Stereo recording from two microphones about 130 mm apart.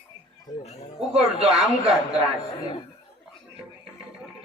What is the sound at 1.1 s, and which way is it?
Speech, 50° right (ahead or behind).